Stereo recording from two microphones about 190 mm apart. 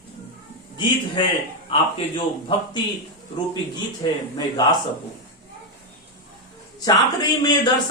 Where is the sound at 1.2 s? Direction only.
25° left (ahead or behind).